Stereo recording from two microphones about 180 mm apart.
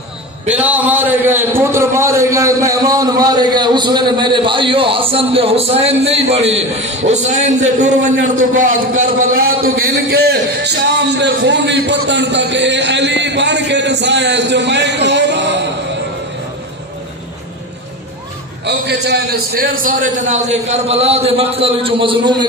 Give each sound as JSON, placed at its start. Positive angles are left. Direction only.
{"t": 0.5, "sound": "a man's voice", "side_deg": -10}
{"t": 18.6, "sound": "a man's voice", "side_deg": -70}